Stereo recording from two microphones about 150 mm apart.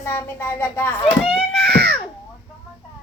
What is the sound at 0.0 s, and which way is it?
Speech, 15° left (ahead or behind).